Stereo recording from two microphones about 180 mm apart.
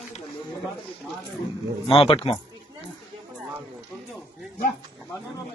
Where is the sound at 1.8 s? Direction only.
30° left (ahead or behind).